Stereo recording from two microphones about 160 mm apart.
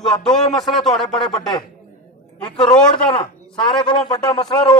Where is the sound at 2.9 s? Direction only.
30° left (ahead or behind).